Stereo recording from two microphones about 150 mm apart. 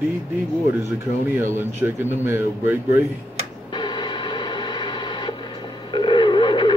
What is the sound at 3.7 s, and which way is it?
Printer, 30° left (ahead or behind).